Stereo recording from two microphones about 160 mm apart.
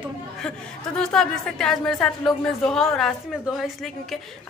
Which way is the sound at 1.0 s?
5° left (ahead or behind).